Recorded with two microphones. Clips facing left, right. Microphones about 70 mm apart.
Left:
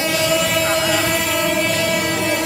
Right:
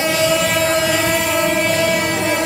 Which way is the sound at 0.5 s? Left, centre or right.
Right.